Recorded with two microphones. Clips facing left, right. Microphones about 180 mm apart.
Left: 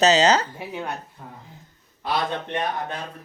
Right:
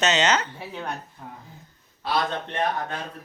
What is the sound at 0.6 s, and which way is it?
Speech, 10° left (ahead or behind).